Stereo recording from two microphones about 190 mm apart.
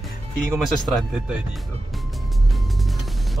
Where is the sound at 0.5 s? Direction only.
Centre (ahead or behind).